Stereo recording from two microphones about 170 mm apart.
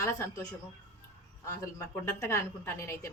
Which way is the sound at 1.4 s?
15° left (ahead or behind).